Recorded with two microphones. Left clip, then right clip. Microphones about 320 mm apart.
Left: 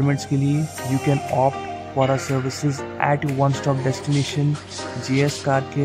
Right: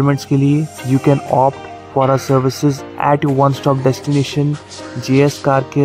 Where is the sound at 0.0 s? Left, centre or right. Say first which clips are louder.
Right 7 dB; centre.